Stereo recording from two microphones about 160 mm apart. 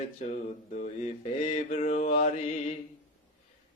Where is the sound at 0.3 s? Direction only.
50° left (ahead or behind).